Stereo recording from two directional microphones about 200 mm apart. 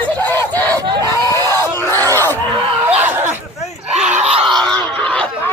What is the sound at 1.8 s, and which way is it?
Crowd, 10° left (ahead or behind).